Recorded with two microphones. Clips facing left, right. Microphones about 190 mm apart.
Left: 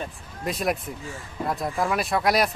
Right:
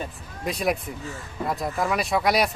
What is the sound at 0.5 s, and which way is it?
Speech, centre (ahead or behind).